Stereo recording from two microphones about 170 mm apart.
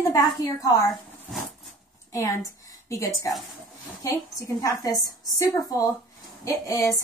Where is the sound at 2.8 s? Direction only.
20° left (ahead or behind).